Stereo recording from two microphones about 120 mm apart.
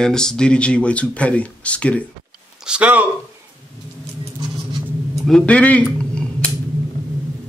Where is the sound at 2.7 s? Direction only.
10° right (ahead or behind).